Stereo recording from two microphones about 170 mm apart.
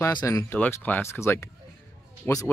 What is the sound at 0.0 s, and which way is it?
Speech, 20° left (ahead or behind).